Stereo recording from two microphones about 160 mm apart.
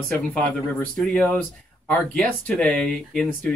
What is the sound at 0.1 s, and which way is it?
Speech, 5° left (ahead or behind).